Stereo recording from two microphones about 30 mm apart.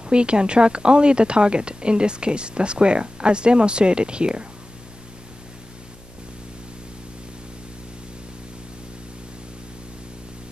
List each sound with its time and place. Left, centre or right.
0.0 s a woman's voice: right